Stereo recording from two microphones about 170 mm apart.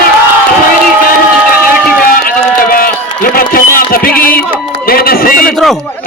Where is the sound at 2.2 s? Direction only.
55° left (ahead or behind).